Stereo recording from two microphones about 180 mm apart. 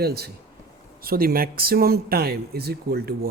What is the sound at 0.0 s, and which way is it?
Speech, 60° right (ahead or behind).